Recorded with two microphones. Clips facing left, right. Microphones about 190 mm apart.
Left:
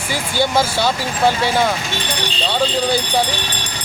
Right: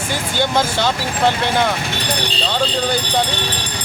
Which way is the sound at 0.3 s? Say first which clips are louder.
Left 1 dB; 10° left (ahead or behind).